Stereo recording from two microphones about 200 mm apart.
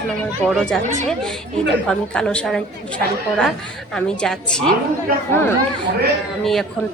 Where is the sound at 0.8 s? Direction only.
35° right (ahead or behind).